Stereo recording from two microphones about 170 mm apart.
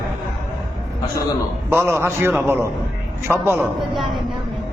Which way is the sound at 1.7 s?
15° right (ahead or behind).